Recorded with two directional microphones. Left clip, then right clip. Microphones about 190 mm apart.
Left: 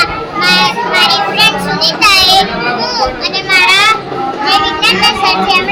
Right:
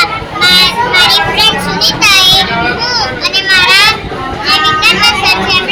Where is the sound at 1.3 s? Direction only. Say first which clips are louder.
Right 1 dB; 15° left (ahead or behind).